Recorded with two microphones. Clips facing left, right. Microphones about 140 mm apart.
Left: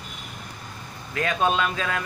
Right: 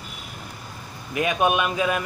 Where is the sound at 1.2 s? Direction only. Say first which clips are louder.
Right 2 dB; 15° right (ahead or behind).